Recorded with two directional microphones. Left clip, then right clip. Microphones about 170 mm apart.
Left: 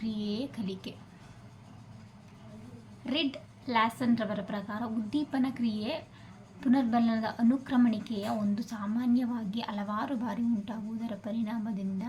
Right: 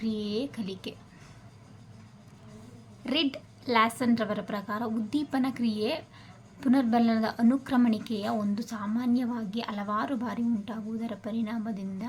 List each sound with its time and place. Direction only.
0.0 s whispering: 25° right (ahead or behind)
3.1 s a woman's voice: 30° right (ahead or behind)